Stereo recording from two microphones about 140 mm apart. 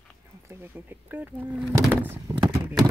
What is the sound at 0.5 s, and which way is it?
Speech, 15° right (ahead or behind).